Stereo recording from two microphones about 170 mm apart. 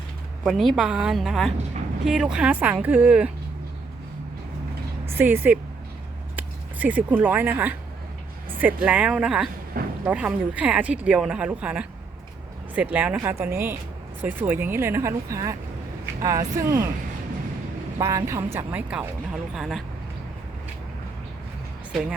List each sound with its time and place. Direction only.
0.4 s a woman's voice: centre (ahead or behind)
5.0 s speech: 10° right (ahead or behind)
9.7 s speech: 55° right (ahead or behind)
10.1 s speech: 5° right (ahead or behind)
17.9 s speech: 15° right (ahead or behind); by 19.8 s centre (ahead or behind)